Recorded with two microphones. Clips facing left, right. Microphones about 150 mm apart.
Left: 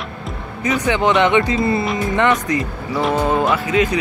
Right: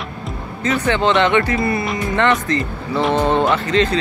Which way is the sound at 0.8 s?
15° left (ahead or behind).